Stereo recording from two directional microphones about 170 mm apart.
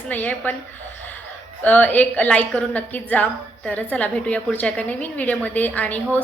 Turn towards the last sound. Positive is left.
turn(degrees=10)  # may be behind; listen again after turning